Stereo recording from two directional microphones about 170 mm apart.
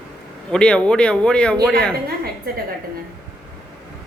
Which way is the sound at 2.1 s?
65° right (ahead or behind).